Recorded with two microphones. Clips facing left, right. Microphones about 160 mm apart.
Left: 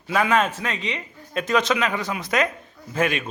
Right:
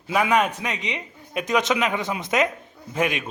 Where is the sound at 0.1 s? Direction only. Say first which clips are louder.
Even; 15° right (ahead or behind).